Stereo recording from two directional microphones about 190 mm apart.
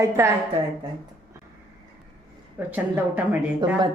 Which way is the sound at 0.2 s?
15° right (ahead or behind).